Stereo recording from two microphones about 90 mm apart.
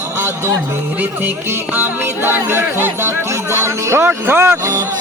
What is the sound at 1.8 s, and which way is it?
Speech, 25° right (ahead or behind).